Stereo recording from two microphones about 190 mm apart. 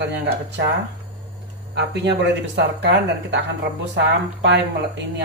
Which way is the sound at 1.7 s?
60° right (ahead or behind).